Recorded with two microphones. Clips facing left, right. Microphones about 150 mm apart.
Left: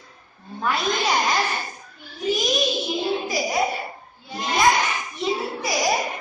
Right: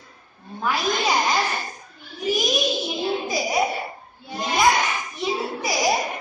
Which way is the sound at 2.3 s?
Centre (ahead or behind).